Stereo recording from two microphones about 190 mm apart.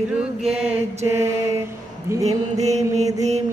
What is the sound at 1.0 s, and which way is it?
Mantra, 15° right (ahead or behind).